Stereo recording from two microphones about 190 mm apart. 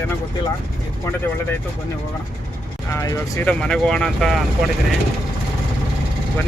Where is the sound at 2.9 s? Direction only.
15° left (ahead or behind).